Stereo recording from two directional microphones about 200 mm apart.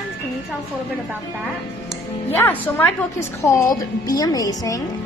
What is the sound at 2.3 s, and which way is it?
A woman's voice, 10° left (ahead or behind).